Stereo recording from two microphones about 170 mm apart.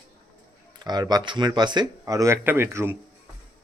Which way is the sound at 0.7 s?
25° right (ahead or behind).